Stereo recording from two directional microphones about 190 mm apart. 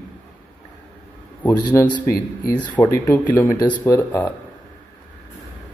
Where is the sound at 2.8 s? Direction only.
10° left (ahead or behind).